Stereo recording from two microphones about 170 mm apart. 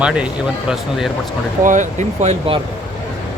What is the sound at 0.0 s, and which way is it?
Speech, 5° right (ahead or behind).